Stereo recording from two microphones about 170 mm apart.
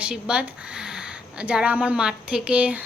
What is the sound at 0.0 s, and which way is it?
A woman's voice, 5° right (ahead or behind).